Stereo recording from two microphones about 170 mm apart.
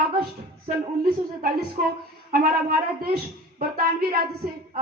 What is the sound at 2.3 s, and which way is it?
A woman's voice, 60° right (ahead or behind).